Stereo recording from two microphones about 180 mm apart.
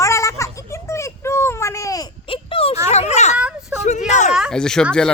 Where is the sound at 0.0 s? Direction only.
15° left (ahead or behind).